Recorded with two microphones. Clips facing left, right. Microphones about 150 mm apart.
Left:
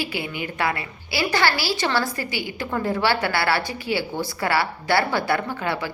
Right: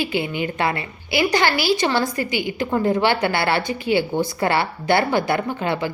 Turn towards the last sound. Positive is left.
turn(degrees=-20)  # may be behind; listen again after turning